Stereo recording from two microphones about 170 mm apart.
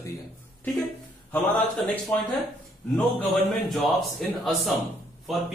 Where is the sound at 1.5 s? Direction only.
5° left (ahead or behind).